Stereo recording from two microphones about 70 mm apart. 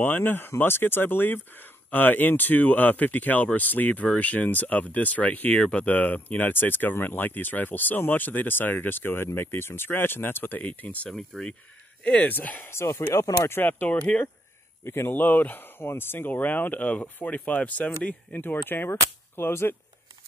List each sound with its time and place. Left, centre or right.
0.0 s speech: left
10.6 s speech: left
11.1 s speech: centre
12.3 s speech: left
12.6 s speech: left